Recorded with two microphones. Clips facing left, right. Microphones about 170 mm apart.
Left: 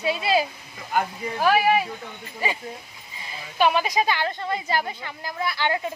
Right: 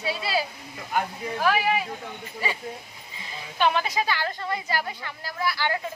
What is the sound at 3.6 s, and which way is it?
A woman's voice, 10° left (ahead or behind).